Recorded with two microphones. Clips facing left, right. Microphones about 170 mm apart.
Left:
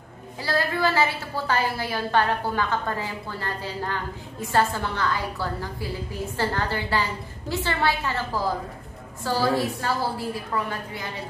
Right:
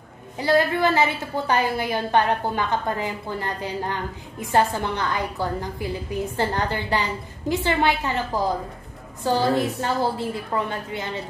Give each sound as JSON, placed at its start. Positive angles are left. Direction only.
{"t": 0.4, "sound": "a woman's voice", "side_deg": -20}